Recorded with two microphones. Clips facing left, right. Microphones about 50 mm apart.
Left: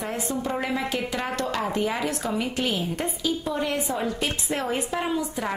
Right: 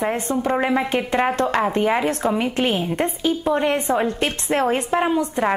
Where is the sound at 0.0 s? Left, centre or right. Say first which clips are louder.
Right 7 dB; right.